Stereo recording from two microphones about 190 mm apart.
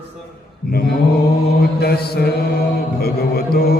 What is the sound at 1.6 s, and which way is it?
Mantra, 55° left (ahead or behind).